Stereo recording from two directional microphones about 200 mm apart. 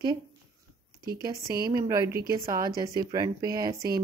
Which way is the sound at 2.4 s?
20° right (ahead or behind).